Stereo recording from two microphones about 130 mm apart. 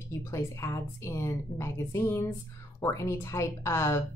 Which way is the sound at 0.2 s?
25° left (ahead or behind).